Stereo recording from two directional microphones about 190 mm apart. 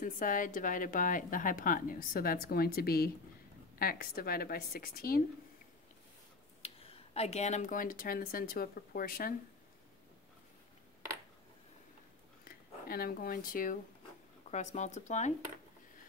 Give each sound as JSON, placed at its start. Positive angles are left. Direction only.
{"t": 0.0, "sound": "a woman's voice", "side_deg": 45}
{"t": 6.6, "sound": "speech", "side_deg": 30}
{"t": 12.4, "sound": "speech", "side_deg": 50}